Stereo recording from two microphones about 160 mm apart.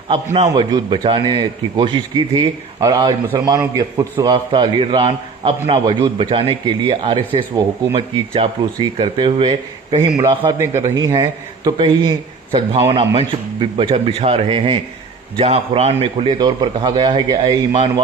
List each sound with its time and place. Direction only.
0.1 s a man's voice: 25° right (ahead or behind)
16.4 s a man's voice: 25° right (ahead or behind)